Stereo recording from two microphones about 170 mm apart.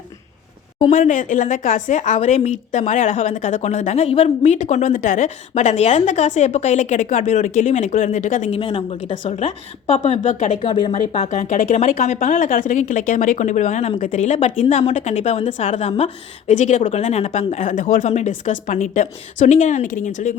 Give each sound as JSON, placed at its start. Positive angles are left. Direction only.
{"t": 0.9, "sound": "a woman's voice", "side_deg": 50}
{"t": 8.5, "sound": "a woman's voice", "side_deg": 30}
{"t": 10.2, "sound": "a woman's voice", "side_deg": 45}
{"t": 10.6, "sound": "a woman's voice", "side_deg": 30}
{"t": 11.2, "sound": "a woman's voice", "side_deg": 45}